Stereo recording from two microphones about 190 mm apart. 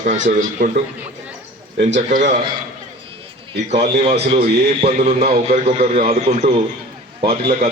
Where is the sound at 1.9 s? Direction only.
40° right (ahead or behind).